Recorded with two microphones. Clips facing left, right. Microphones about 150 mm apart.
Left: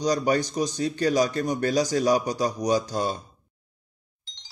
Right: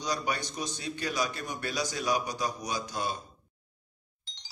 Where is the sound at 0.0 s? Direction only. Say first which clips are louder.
Left 10 dB; 40° left (ahead or behind).